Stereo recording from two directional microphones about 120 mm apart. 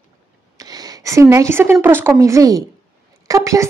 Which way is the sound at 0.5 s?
30° right (ahead or behind).